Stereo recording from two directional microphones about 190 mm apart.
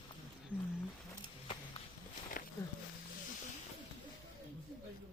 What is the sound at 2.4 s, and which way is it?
Walk, 45° left (ahead or behind).